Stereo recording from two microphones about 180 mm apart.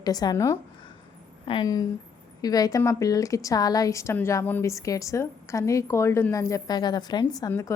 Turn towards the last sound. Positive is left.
turn(degrees=15)  # may be behind; listen again after turning